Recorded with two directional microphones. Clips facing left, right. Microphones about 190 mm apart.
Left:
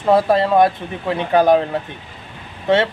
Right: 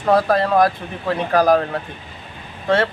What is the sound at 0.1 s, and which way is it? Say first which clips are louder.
Speech: left 2 dB; 25° left (ahead or behind).